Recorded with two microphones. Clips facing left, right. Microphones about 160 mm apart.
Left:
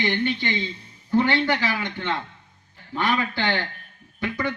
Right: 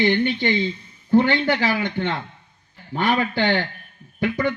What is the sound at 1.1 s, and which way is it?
A man's voice, 45° right (ahead or behind).